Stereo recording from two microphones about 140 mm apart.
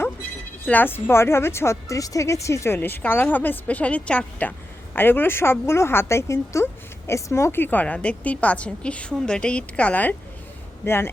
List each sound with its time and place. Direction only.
0.6 s a woman's voice: 10° left (ahead or behind)